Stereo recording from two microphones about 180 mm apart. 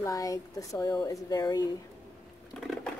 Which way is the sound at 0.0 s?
20° left (ahead or behind).